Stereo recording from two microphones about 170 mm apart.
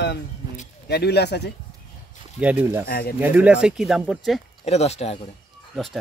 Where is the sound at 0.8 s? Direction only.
75° left (ahead or behind).